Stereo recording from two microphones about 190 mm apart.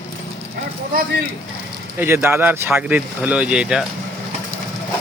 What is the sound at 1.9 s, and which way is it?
Speech, 10° right (ahead or behind).